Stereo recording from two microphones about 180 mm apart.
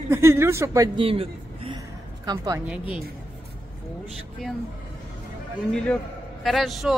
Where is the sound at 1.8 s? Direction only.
20° right (ahead or behind).